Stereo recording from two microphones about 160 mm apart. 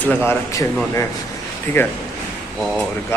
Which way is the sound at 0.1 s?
15° left (ahead or behind).